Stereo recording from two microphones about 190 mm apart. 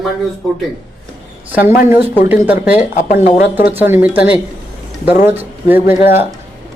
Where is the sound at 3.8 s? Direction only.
10° right (ahead or behind).